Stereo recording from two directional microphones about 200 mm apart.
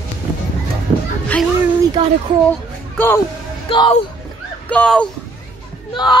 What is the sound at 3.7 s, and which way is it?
Speech, 25° left (ahead or behind).